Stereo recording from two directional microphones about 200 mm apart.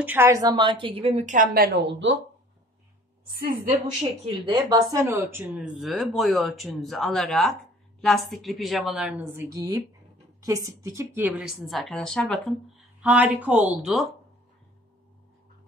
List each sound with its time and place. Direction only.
0.0 s a woman's voice: 10° right (ahead or behind); by 2.1 s 60° right (ahead or behind)
3.3 s a woman's voice: 50° right (ahead or behind)
4.5 s speech: 20° right (ahead or behind); by 9.1 s centre (ahead or behind)
9.4 s speech: 15° right (ahead or behind)